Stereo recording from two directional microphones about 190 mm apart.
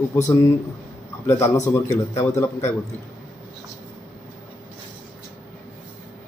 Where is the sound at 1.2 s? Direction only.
15° left (ahead or behind).